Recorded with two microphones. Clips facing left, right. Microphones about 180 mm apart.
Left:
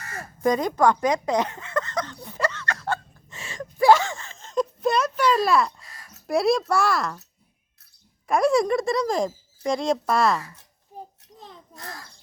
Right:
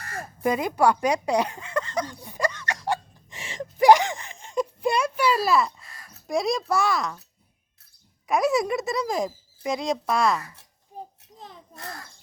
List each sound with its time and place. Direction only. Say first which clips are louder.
0.4 s a sound: left 1 dB; 10° right (ahead or behind)
6.2 s speech: left 4 dB; centre (ahead or behind)
8.3 s speech: left 3 dB; centre (ahead or behind)